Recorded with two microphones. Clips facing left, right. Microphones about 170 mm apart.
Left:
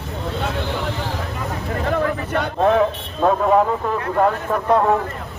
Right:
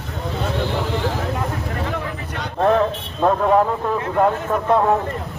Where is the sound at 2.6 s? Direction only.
5° left (ahead or behind).